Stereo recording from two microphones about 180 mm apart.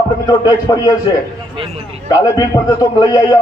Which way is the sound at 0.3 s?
20° left (ahead or behind).